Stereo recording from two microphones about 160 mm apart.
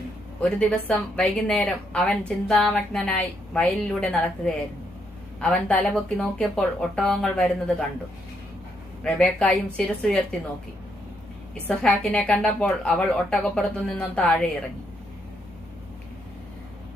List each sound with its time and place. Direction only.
0.6 s a woman's voice: 5° left (ahead or behind)
9.0 s speech: 5° left (ahead or behind)
11.8 s a woman's voice: 5° left (ahead or behind)